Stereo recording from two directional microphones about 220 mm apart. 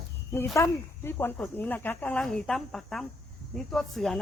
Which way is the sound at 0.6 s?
10° left (ahead or behind).